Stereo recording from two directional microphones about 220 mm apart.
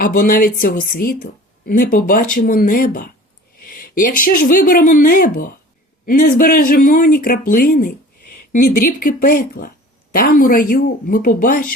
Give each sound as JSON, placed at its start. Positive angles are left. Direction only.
{"t": 0.0, "sound": "speech", "side_deg": 40}